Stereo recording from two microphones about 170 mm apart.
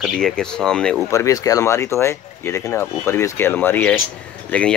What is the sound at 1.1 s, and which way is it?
Speech, 20° left (ahead or behind).